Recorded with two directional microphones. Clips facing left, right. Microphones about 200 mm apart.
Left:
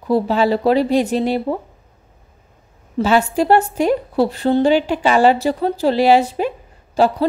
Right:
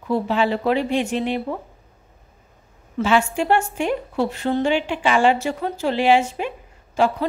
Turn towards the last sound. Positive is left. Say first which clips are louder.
# left 4 dB
turn(degrees=35)  # may be behind; listen again after turning